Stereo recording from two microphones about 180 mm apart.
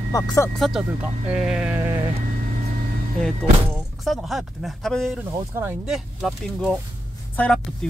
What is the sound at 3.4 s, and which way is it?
Speech, centre (ahead or behind).